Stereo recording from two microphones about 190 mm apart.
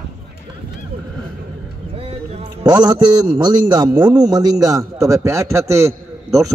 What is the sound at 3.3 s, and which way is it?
A man's voice, 25° right (ahead or behind).